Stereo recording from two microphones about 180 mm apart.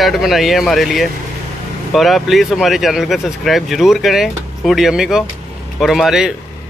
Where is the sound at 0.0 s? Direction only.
Centre (ahead or behind).